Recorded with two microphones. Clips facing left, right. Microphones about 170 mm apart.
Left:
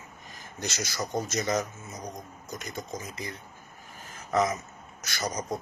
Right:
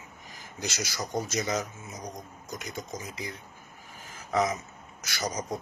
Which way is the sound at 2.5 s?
15° right (ahead or behind).